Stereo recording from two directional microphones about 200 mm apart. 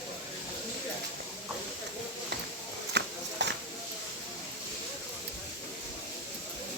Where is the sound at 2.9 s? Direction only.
60° right (ahead or behind).